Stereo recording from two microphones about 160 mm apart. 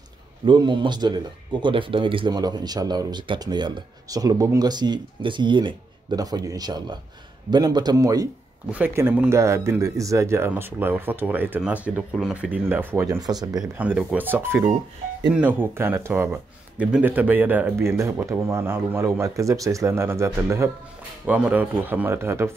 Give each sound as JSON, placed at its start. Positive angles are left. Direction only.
{"t": 0.5, "sound": "speech", "side_deg": -30}
{"t": 13.1, "sound": "speech", "side_deg": -25}
{"t": 13.7, "sound": "speech", "side_deg": -10}